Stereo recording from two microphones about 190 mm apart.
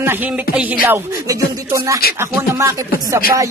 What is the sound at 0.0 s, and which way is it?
Speech, 10° right (ahead or behind).